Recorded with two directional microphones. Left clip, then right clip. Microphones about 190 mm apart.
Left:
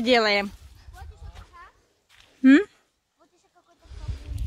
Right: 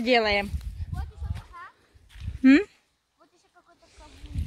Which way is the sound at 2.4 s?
10° left (ahead or behind).